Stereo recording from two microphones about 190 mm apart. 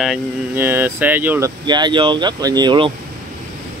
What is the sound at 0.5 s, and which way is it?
Speech, 10° right (ahead or behind).